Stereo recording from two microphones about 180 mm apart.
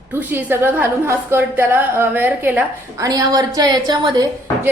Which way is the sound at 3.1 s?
20° right (ahead or behind).